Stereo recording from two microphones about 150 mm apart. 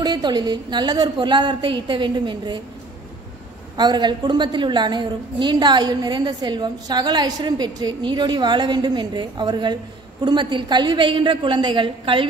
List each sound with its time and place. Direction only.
0.0 s a woman's voice: 30° right (ahead or behind)
3.7 s a woman's voice: 30° right (ahead or behind)